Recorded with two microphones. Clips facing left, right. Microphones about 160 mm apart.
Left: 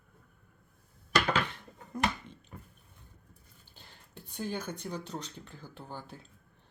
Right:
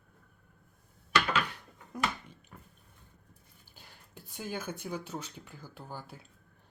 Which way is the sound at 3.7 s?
10° right (ahead or behind).